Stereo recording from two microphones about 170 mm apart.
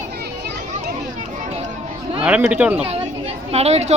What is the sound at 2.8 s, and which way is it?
Chatter, 35° right (ahead or behind).